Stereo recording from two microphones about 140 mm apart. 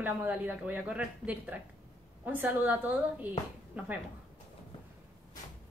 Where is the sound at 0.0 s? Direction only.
10° right (ahead or behind).